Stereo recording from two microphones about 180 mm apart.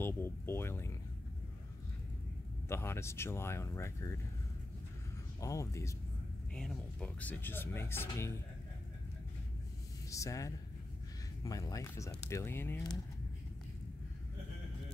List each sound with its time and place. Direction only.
0.0 s music: 10° left (ahead or behind)
2.7 s speech: 15° left (ahead or behind)
5.4 s speech: 15° left (ahead or behind)
6.5 s speech: 5° left (ahead or behind)
10.0 s speech: 15° left (ahead or behind)